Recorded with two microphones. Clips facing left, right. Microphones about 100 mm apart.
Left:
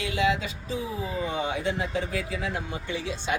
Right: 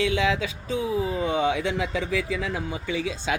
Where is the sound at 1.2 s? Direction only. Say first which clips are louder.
Right 2 dB; 90° right.